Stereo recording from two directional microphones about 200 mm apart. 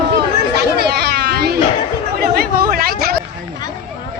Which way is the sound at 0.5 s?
55° right (ahead or behind).